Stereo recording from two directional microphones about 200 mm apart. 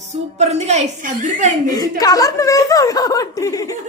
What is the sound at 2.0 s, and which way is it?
Speech, 20° left (ahead or behind).